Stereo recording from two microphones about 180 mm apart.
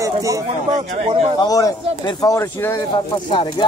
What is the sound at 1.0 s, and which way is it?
Speech, 35° right (ahead or behind).